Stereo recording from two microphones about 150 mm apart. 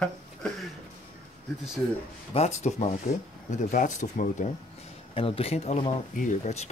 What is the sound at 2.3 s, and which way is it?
Speech, 50° left (ahead or behind).